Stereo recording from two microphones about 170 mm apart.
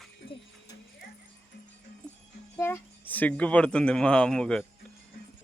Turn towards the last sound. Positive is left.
turn(degrees=5)  # may be behind; listen again after turning